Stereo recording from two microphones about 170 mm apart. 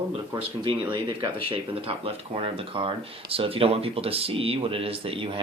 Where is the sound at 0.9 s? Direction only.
30° right (ahead or behind).